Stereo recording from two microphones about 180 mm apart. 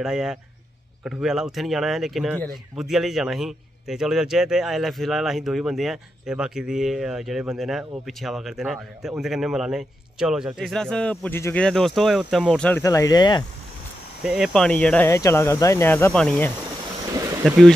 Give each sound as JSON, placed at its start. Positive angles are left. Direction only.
{"t": 0.0, "sound": "a man's voice", "side_deg": -5}
{"t": 12.8, "sound": "speech", "side_deg": 20}
{"t": 14.2, "sound": "speech", "side_deg": -5}
{"t": 14.5, "sound": "speech", "side_deg": 5}